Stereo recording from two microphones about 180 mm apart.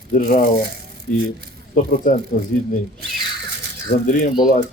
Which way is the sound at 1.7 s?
50° left (ahead or behind).